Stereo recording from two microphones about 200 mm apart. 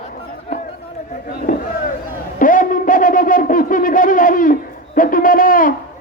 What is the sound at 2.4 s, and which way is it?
Speech, 40° left (ahead or behind).